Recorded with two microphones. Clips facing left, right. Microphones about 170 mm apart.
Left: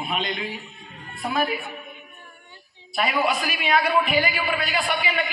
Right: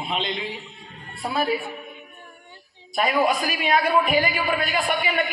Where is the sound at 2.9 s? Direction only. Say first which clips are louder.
Right 2 dB; 40° right (ahead or behind).